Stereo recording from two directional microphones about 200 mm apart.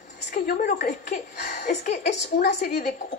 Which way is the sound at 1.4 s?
55° left (ahead or behind).